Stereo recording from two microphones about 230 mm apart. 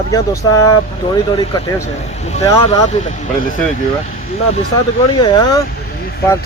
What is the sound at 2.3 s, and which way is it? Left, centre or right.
Speech, left.